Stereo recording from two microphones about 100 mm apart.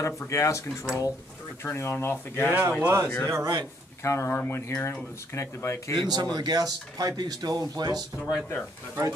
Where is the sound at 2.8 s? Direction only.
30° right (ahead or behind).